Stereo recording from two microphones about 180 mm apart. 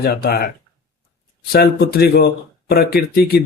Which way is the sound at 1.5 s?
60° left (ahead or behind).